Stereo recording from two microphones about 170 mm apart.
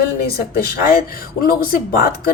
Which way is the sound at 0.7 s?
65° left (ahead or behind).